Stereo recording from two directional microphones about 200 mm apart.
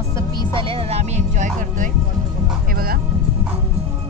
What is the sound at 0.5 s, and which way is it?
Music, 25° right (ahead or behind).